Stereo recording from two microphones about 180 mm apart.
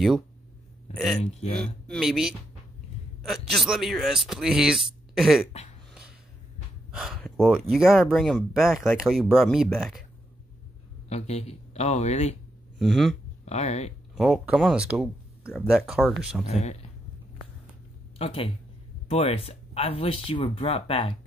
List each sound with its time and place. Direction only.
1.2 s speech: 35° left (ahead or behind)
1.6 s speech: centre (ahead or behind)
6.9 s gasp: 5° right (ahead or behind)
7.7 s speech: centre (ahead or behind)
11.1 s speech: 35° left (ahead or behind)
12.7 s speech: centre (ahead or behind)
13.5 s speech: 40° left (ahead or behind)
14.1 s speech: 5° right (ahead or behind)
18.1 s speech: 35° left (ahead or behind)